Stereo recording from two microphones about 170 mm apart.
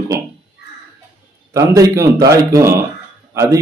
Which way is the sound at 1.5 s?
20° right (ahead or behind).